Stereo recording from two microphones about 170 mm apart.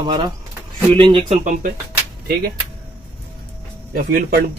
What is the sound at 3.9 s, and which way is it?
Speech, 60° right (ahead or behind).